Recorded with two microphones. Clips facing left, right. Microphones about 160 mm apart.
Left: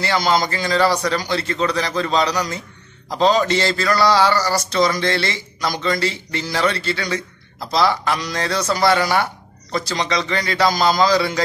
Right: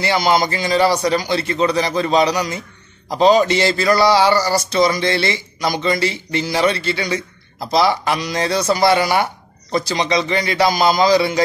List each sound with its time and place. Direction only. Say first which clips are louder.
0.0 s speech: right 2 dB; 15° right (ahead or behind)